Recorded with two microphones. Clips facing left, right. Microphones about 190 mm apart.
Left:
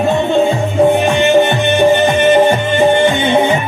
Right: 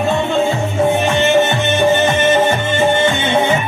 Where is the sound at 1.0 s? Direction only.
15° left (ahead or behind).